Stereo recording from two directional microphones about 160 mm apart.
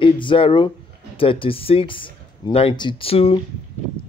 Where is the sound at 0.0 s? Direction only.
30° left (ahead or behind).